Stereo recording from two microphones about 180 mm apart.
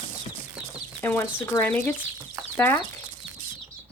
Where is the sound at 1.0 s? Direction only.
10° left (ahead or behind).